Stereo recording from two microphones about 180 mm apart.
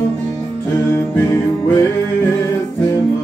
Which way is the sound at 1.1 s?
15° left (ahead or behind).